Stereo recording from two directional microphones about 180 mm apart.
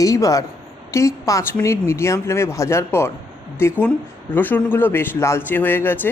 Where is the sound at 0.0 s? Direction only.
20° left (ahead or behind).